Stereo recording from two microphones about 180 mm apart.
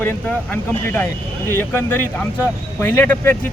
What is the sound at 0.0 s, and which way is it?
Speech, 10° left (ahead or behind).